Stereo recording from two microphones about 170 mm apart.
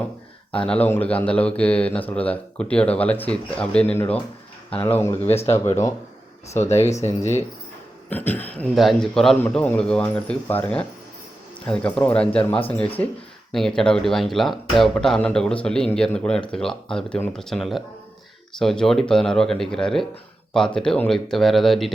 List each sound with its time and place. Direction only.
0.6 s speech: 5° left (ahead or behind)
6.5 s speech: 15° left (ahead or behind)